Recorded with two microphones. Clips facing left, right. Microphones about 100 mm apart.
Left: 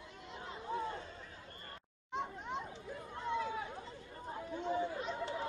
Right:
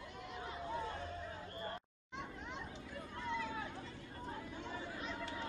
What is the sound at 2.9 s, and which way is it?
Chatter, 25° left (ahead or behind).